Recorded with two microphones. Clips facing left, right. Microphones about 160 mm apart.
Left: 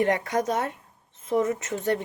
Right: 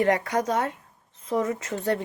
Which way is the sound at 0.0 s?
20° left (ahead or behind).